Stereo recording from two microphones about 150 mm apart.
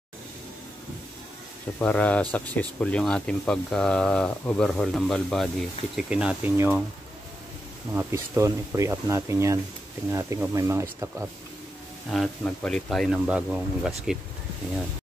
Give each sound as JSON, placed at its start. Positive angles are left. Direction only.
{"t": 1.8, "sound": "speech", "side_deg": 10}
{"t": 7.9, "sound": "speech", "side_deg": -20}
{"t": 12.1, "sound": "speech", "side_deg": 5}